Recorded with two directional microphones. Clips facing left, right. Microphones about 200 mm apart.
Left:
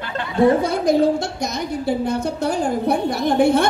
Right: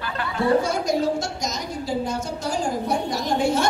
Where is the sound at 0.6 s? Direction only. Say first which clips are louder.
Left 6 dB; 60° left (ahead or behind).